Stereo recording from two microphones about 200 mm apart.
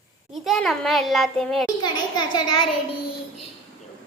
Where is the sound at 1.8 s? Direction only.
20° left (ahead or behind).